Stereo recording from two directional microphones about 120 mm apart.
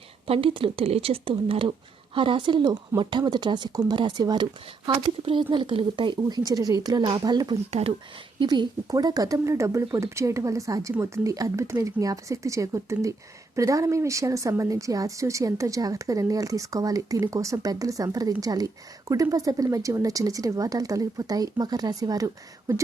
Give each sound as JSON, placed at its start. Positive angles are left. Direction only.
{"t": 0.3, "sound": "speech", "side_deg": -50}
{"t": 7.5, "sound": "speech", "side_deg": -60}
{"t": 8.4, "sound": "speech", "side_deg": -40}